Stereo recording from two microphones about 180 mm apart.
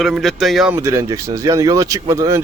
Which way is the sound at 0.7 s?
15° right (ahead or behind).